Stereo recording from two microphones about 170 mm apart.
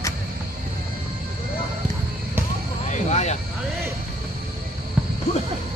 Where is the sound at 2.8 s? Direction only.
45° left (ahead or behind).